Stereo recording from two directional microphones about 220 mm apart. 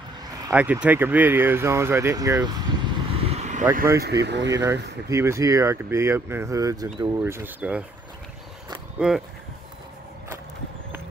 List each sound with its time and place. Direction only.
0.5 s speech: 5° right (ahead or behind); by 3.6 s 30° right (ahead or behind)
4.0 s speech: 50° right (ahead or behind)
4.5 s speech: 15° right (ahead or behind)
8.9 s speech: 5° right (ahead or behind)